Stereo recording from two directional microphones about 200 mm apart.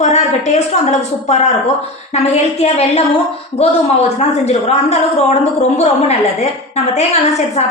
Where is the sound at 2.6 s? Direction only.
30° left (ahead or behind).